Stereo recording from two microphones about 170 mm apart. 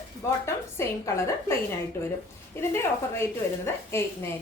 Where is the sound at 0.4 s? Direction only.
15° left (ahead or behind).